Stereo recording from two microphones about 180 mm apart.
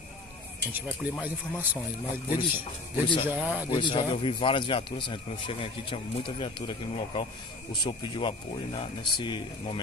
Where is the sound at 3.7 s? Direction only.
25° left (ahead or behind).